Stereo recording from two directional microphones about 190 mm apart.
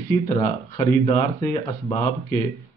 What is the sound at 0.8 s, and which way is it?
Speech, 25° left (ahead or behind).